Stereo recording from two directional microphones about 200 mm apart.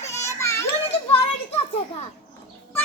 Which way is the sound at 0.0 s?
15° left (ahead or behind).